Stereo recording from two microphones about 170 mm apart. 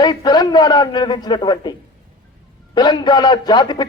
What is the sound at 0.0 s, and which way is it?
A man's voice, 25° left (ahead or behind).